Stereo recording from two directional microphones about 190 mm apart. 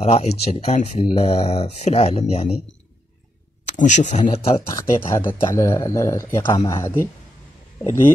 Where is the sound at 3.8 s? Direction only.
40° left (ahead or behind).